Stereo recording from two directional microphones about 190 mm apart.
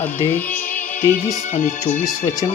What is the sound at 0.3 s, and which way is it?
Music, 10° left (ahead or behind).